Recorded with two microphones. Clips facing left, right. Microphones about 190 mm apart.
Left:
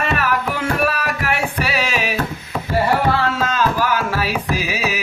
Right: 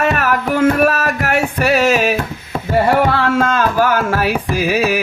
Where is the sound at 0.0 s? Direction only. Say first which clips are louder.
Right 4 dB; 45° right (ahead or behind).